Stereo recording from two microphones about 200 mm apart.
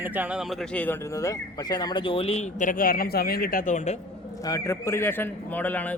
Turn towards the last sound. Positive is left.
turn(degrees=10)  # may be behind; listen again after turning